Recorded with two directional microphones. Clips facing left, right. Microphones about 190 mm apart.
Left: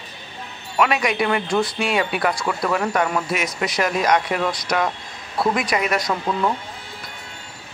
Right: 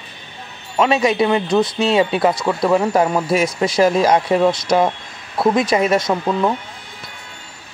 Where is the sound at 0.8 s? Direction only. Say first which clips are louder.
Right 5 dB; 25° right (ahead or behind).